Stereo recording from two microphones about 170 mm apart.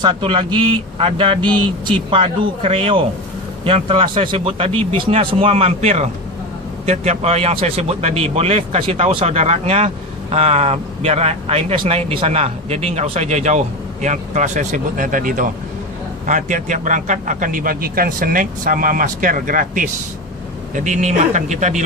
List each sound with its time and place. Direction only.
0.0 s a man's voice: 30° right (ahead or behind); by 21.8 s 45° right (ahead or behind)